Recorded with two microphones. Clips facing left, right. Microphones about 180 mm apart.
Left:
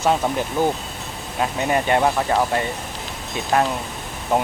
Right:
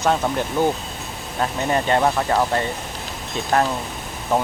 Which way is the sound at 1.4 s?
15° left (ahead or behind).